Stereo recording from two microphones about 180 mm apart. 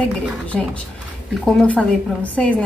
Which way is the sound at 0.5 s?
5° left (ahead or behind).